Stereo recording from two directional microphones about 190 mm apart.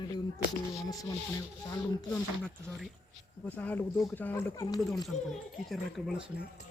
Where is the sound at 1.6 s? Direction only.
20° left (ahead or behind).